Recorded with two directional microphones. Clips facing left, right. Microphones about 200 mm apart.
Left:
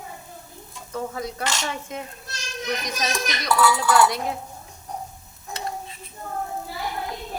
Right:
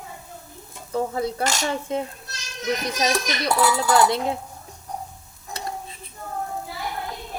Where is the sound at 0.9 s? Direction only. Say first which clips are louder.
Right 5 dB; 30° right (ahead or behind).